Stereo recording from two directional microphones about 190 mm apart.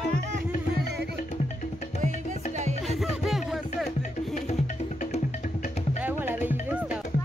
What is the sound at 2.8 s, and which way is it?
Music, centre (ahead or behind).